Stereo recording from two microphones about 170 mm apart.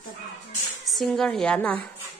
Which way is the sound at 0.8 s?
Centre (ahead or behind).